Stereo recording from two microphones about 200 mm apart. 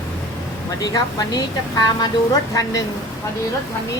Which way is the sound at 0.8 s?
20° left (ahead or behind).